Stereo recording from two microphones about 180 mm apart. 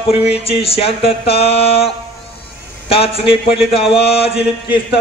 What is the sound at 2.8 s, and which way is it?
Music, 30° left (ahead or behind).